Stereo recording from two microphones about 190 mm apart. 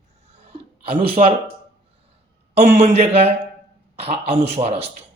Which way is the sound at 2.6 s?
35° right (ahead or behind).